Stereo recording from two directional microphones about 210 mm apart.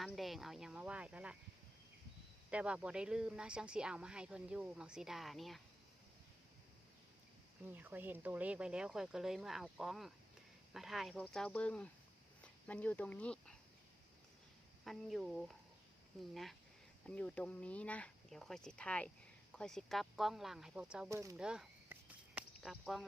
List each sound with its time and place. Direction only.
0.0 s speech: centre (ahead or behind)
2.5 s speech: 5° right (ahead or behind)
7.6 s speech: 10° right (ahead or behind)
14.8 s speech: centre (ahead or behind)
22.4 s a sound: centre (ahead or behind)